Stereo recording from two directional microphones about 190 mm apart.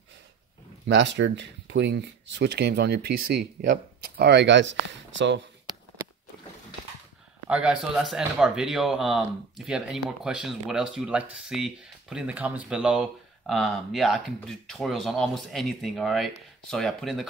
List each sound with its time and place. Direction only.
0.8 s speech: 70° right (ahead or behind)
7.4 s speech: 5° right (ahead or behind)